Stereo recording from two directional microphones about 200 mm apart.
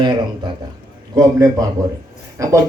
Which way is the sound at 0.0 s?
20° right (ahead or behind).